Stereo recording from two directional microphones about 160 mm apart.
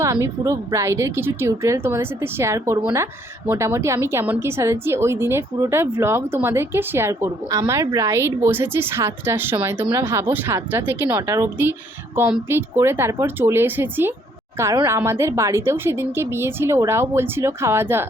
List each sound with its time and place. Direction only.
0.0 s a woman's voice: 20° right (ahead or behind)